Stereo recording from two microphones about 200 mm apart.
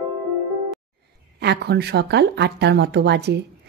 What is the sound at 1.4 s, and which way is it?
Speech, 55° right (ahead or behind).